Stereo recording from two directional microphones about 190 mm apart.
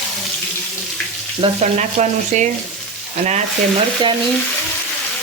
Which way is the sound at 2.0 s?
40° right (ahead or behind).